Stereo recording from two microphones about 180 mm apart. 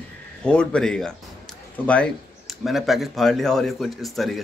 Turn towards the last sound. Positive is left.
turn(degrees=0)  # may be behind; listen again after turning